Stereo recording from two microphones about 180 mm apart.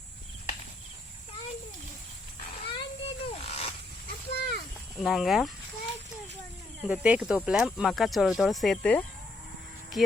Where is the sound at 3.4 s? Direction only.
35° left (ahead or behind).